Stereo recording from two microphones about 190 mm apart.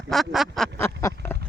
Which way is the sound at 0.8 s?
15° left (ahead or behind).